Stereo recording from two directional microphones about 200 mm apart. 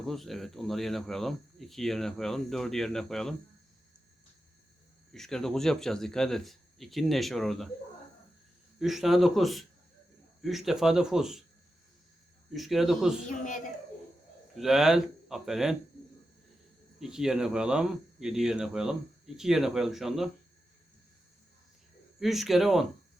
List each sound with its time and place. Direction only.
0.0 s speech: centre (ahead or behind)
5.1 s speech: centre (ahead or behind)
8.8 s speech: centre (ahead or behind)
12.5 s speech: centre (ahead or behind)
13.2 s speech: 40° left (ahead or behind)
14.6 s speech: centre (ahead or behind)
17.0 s speech: 5° right (ahead or behind)
22.2 s speech: centre (ahead or behind)